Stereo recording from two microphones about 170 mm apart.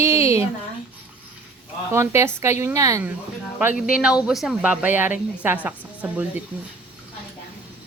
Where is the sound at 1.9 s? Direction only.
15° right (ahead or behind).